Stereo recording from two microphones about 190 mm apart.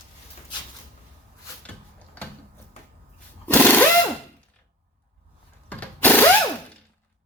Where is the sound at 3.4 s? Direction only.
10° left (ahead or behind).